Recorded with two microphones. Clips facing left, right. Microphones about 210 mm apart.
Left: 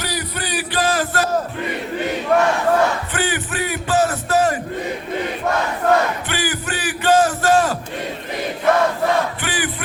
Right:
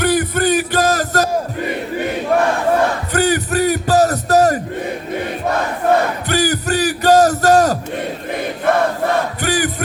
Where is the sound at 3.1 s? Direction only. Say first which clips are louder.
Right 7 dB; 40° right (ahead or behind).